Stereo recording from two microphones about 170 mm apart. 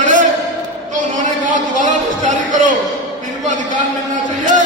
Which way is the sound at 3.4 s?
45° right (ahead or behind).